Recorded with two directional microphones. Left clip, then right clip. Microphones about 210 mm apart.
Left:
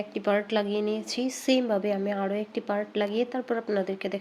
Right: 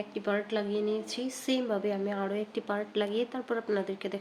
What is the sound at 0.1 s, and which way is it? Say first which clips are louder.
A woman's voice: left 6 dB; 30° left (ahead or behind).